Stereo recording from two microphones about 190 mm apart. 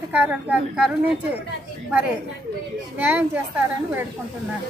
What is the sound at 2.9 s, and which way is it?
Speech, 10° right (ahead or behind).